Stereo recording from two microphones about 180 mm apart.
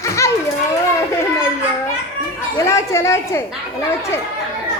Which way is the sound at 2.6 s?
15° left (ahead or behind).